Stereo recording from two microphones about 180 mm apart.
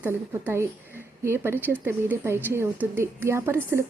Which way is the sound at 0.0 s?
10° right (ahead or behind).